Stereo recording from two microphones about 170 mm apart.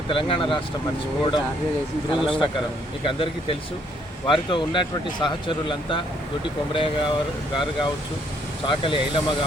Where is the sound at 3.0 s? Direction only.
30° left (ahead or behind).